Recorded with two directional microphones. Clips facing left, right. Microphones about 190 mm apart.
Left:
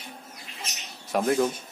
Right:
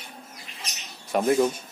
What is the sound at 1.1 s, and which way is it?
Speech, 5° right (ahead or behind).